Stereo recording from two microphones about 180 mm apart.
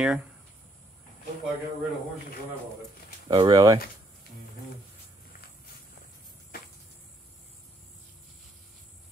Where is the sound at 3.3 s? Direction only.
25° right (ahead or behind).